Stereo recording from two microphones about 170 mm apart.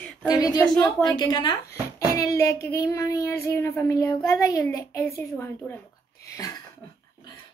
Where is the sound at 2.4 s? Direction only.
15° left (ahead or behind).